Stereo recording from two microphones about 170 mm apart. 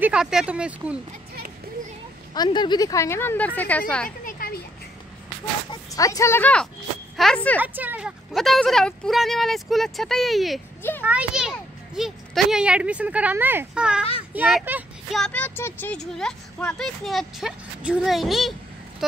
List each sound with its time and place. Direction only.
0.0 s speech: 5° right (ahead or behind)
2.3 s speech: 25° left (ahead or behind); by 4.1 s 5° left (ahead or behind)
4.2 s a sound: 55° left (ahead or behind)
5.7 s speech: 20° left (ahead or behind)
7.6 s speech: 10° right (ahead or behind)
10.8 s a child's voice: 10° left (ahead or behind)
11.1 s a child's voice: 5° right (ahead or behind)
15.1 s speech: 5° left (ahead or behind)